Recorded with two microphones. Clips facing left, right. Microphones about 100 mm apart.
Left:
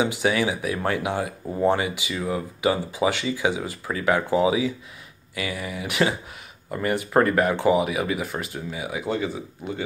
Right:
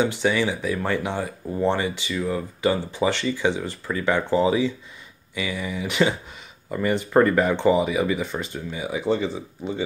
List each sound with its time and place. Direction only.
0.0 s speech: 10° left (ahead or behind)